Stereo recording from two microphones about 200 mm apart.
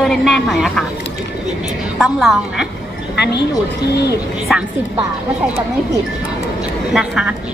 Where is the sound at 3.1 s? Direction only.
55° left (ahead or behind).